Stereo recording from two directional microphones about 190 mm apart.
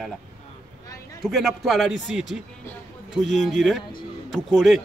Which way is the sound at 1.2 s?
Centre (ahead or behind).